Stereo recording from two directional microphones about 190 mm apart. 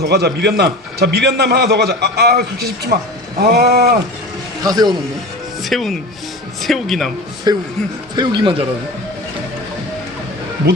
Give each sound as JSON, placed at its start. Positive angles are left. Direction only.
{"t": 0.0, "sound": "a man's voice", "side_deg": -60}
{"t": 4.6, "sound": "speech", "side_deg": -20}
{"t": 5.6, "sound": "speech", "side_deg": 0}
{"t": 7.5, "sound": "speech", "side_deg": -20}